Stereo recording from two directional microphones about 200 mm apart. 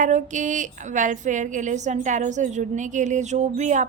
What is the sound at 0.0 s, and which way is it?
A woman's voice, 40° right (ahead or behind).